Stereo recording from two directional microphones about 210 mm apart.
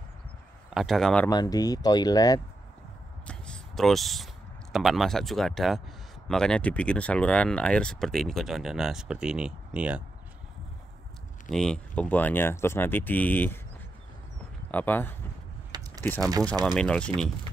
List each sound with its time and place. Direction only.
0.7 s speech: centre (ahead or behind)
1.3 s speech: 20° left (ahead or behind)
3.3 s a sound: 5° left (ahead or behind)
4.7 s speech: centre (ahead or behind)
11.4 s speech: centre (ahead or behind)
14.7 s speech: 10° left (ahead or behind)
15.7 s a sound: 20° right (ahead or behind)
16.0 s speech: 10° left (ahead or behind)